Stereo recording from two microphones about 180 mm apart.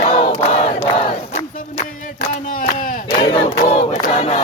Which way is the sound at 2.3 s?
50° left (ahead or behind).